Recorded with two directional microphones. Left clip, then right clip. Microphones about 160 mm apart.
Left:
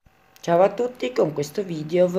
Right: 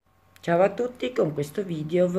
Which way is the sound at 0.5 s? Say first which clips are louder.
Left 3 dB; 15° right (ahead or behind).